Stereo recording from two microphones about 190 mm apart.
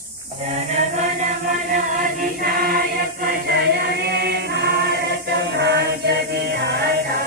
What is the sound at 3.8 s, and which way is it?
Choir, 55° right (ahead or behind).